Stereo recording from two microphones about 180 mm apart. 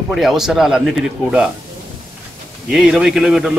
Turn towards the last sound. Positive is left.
turn(degrees=-5)  # may be behind; listen again after turning